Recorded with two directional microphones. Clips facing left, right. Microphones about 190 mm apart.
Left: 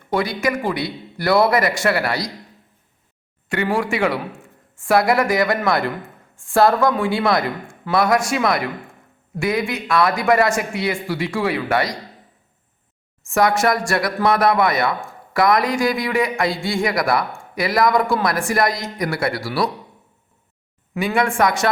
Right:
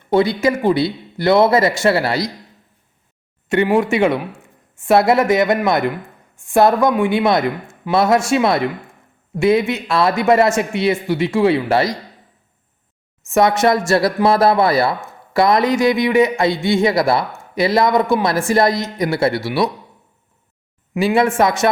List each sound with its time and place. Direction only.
0.1 s speech: 25° right (ahead or behind)
3.5 s speech: 20° right (ahead or behind)
13.2 s speech: 20° right (ahead or behind)
20.9 s speech: 25° right (ahead or behind)